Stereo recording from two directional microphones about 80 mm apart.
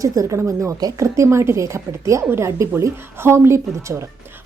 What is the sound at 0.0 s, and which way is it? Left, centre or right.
A woman's voice, right.